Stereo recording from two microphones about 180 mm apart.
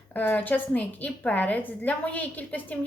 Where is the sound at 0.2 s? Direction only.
10° left (ahead or behind).